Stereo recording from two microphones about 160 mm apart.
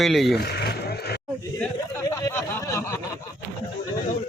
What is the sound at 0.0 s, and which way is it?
Speech, centre (ahead or behind).